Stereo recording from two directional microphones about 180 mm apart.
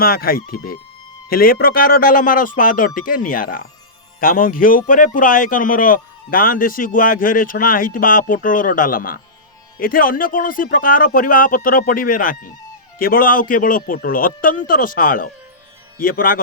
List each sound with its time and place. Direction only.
0.0 s a man's voice: 55° left (ahead or behind)